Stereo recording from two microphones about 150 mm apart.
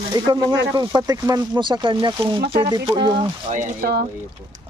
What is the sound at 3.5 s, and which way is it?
Speech, 65° right (ahead or behind).